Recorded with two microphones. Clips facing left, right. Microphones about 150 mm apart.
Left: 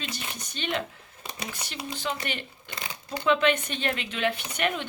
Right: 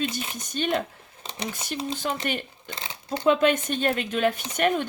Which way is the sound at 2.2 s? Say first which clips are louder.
Right 5 dB; 45° right (ahead or behind).